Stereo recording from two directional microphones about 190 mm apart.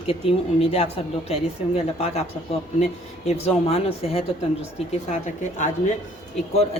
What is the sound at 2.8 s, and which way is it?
Speech, 35° left (ahead or behind).